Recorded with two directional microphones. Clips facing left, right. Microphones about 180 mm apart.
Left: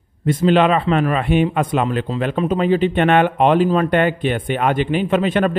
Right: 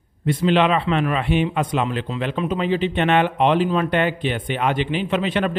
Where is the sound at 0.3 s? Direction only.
45° left (ahead or behind).